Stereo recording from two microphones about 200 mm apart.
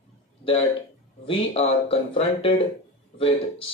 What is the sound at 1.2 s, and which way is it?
Speech, 25° left (ahead or behind).